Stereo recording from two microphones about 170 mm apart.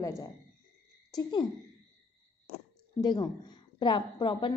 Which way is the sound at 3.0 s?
25° left (ahead or behind).